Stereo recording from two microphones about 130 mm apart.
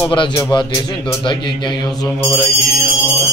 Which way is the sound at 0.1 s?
35° left (ahead or behind).